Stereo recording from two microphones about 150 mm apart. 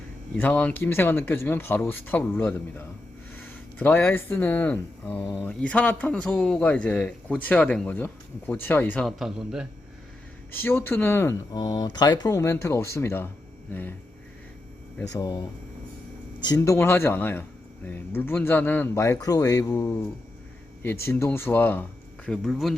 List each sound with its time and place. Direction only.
0.3 s a man's voice: 10° left (ahead or behind)
9.0 s speech: centre (ahead or behind)
10.5 s speech: 15° left (ahead or behind)
15.0 s speech: 25° left (ahead or behind)
16.6 s a man's voice: 15° left (ahead or behind)
22.3 s speech: centre (ahead or behind)